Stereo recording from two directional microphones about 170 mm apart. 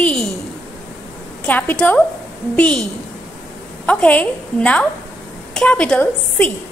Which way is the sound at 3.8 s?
10° left (ahead or behind).